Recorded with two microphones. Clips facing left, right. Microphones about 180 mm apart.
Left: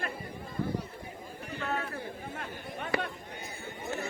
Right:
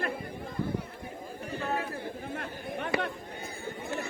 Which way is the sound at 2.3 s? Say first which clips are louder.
Right 4 dB; 55° right (ahead or behind).